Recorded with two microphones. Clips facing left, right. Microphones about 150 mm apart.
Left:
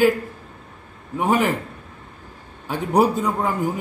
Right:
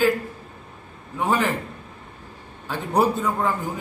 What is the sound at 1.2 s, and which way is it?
Speech, 10° left (ahead or behind).